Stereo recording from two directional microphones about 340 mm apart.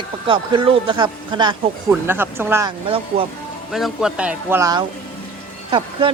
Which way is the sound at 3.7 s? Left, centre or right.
Centre.